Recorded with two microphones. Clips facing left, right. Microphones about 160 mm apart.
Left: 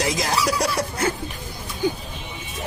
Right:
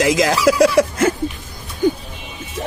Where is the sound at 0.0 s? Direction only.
90° right.